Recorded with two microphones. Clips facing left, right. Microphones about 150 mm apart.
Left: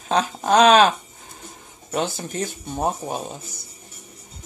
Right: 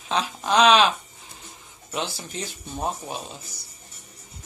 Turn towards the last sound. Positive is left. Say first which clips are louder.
# left 5 dB
turn(degrees=50)  # may be behind; listen again after turning